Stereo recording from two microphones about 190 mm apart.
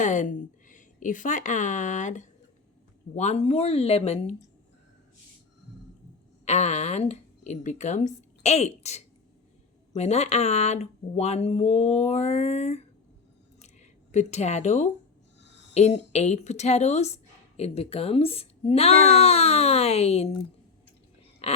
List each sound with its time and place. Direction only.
0.0 s a woman's voice: 40° left (ahead or behind)
6.4 s speech: 35° left (ahead or behind)
14.1 s speech: 35° left (ahead or behind)
21.4 s a sound: 35° left (ahead or behind)